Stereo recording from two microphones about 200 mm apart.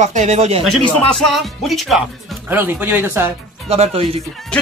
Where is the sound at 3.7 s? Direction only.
30° right (ahead or behind).